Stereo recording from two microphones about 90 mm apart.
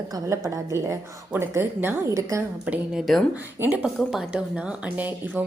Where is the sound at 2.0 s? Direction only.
35° right (ahead or behind).